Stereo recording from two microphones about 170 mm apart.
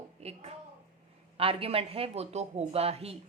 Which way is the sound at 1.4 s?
35° right (ahead or behind).